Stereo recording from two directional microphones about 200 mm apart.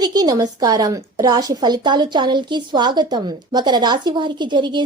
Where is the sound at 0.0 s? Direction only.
20° right (ahead or behind).